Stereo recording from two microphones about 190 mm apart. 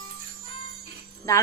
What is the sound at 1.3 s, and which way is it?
Speech, 15° left (ahead or behind).